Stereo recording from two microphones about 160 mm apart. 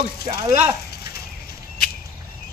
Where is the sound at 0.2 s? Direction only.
80° left.